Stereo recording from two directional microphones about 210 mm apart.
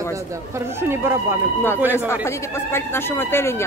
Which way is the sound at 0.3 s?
15° right (ahead or behind).